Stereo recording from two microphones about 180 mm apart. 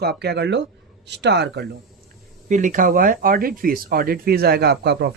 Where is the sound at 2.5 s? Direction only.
45° right (ahead or behind).